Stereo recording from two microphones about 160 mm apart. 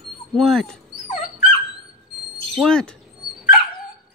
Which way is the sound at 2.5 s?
5° left (ahead or behind).